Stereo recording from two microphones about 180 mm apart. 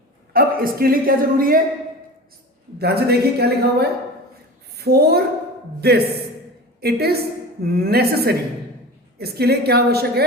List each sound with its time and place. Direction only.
0.3 s a woman's voice: 55° right (ahead or behind)
2.7 s a woman's voice: 60° right (ahead or behind)